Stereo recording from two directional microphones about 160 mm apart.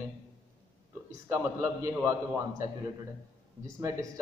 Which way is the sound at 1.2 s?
15° right (ahead or behind).